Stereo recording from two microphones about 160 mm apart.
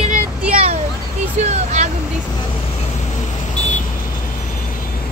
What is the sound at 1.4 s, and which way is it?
Speech, 45° right (ahead or behind).